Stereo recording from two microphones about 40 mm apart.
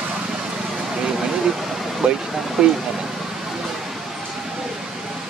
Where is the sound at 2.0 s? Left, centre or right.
Right.